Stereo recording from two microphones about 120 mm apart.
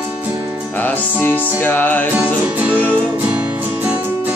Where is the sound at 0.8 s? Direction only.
15° left (ahead or behind).